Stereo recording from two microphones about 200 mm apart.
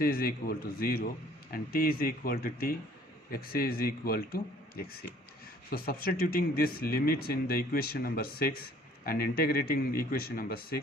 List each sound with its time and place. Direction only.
0.0 s speech: 45° left (ahead or behind)